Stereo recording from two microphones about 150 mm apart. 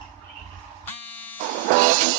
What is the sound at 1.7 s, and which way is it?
Music, 60° right (ahead or behind).